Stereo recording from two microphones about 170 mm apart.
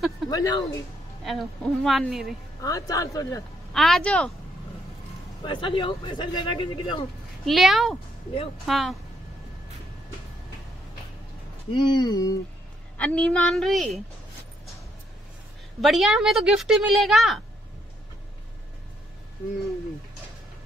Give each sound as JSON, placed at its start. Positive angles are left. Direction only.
{"t": 0.3, "sound": "speech", "side_deg": 20}
{"t": 1.2, "sound": "speech", "side_deg": 0}
{"t": 2.6, "sound": "speech", "side_deg": 20}
{"t": 3.7, "sound": "speech", "side_deg": 0}
{"t": 5.4, "sound": "speech", "side_deg": 30}
{"t": 7.4, "sound": "speech", "side_deg": 0}
{"t": 11.7, "sound": "speech", "side_deg": 25}
{"t": 12.9, "sound": "speech", "side_deg": 5}
{"t": 15.8, "sound": "speech", "side_deg": 0}